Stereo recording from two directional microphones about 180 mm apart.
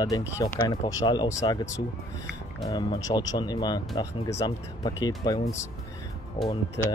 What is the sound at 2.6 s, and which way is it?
Speech, 25° left (ahead or behind).